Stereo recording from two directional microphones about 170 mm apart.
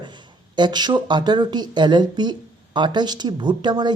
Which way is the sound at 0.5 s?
25° right (ahead or behind).